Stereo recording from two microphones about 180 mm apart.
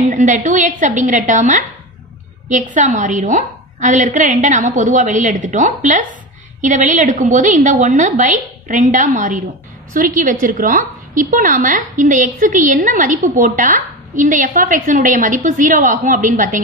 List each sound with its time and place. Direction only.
0.1 s a woman's voice: 45° right (ahead or behind)